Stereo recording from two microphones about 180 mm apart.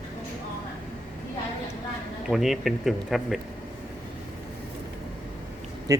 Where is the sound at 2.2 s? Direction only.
Centre (ahead or behind).